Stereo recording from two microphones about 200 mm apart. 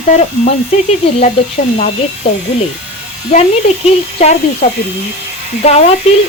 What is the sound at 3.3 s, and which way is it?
Speech, 30° left (ahead or behind).